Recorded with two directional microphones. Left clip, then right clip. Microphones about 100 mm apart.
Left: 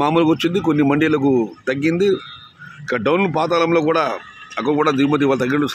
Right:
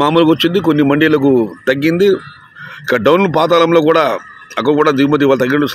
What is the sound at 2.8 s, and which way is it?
A man's voice, 45° right (ahead or behind).